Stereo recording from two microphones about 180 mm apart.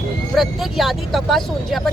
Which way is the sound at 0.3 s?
Centre (ahead or behind).